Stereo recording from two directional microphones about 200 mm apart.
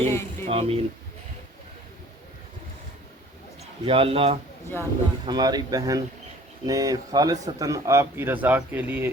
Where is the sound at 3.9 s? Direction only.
25° right (ahead or behind).